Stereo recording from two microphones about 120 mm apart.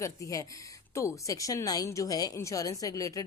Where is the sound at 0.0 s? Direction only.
25° left (ahead or behind).